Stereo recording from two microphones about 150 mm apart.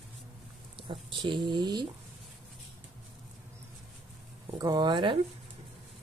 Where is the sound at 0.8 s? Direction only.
35° right (ahead or behind).